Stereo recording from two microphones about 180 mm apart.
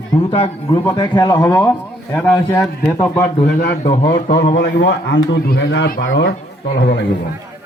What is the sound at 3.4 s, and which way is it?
Speech, 60° left (ahead or behind).